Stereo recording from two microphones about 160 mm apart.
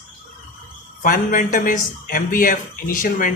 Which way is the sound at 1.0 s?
55° left (ahead or behind).